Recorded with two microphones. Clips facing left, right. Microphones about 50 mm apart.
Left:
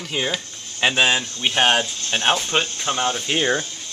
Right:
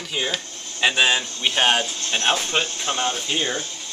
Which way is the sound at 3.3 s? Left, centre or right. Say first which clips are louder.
Left 4 dB; left.